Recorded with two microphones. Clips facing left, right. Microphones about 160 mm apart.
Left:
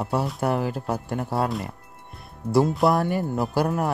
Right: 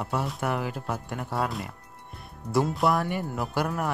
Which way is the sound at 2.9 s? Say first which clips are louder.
Left 4 dB; 35° left (ahead or behind).